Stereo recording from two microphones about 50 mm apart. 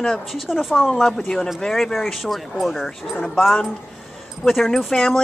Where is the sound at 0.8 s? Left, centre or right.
Centre.